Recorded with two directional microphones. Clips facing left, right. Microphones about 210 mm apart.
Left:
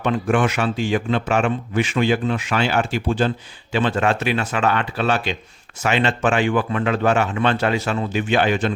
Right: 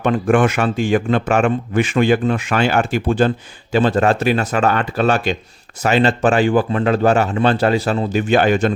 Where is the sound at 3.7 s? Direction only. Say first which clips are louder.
Right 5 dB; 40° right (ahead or behind).